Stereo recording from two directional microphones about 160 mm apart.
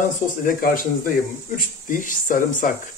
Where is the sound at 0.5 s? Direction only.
60° left (ahead or behind).